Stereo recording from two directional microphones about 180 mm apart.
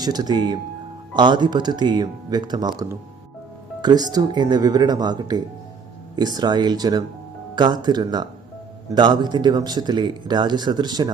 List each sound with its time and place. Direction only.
0.0 s speech: 20° right (ahead or behind)